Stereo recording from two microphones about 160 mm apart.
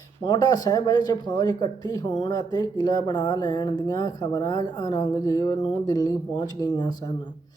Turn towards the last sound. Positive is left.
turn(degrees=25)  # may be behind; listen again after turning